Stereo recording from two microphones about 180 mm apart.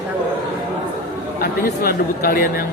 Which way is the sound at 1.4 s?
55° left (ahead or behind).